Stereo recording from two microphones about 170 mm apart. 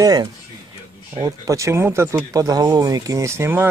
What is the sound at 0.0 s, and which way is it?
Speech, 25° right (ahead or behind).